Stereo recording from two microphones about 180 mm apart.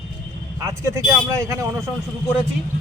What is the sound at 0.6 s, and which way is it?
Speech, 15° right (ahead or behind).